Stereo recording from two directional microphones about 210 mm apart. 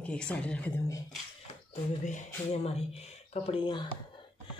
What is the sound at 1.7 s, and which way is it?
Speech, 35° left (ahead or behind).